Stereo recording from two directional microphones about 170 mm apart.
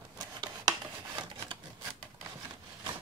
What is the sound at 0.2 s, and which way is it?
Rub, 25° right (ahead or behind).